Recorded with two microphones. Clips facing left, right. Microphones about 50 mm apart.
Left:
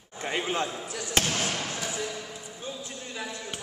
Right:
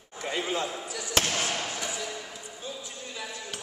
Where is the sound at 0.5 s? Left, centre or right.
Left.